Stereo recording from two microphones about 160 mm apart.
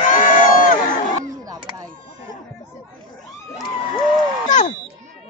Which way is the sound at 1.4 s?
20° right (ahead or behind).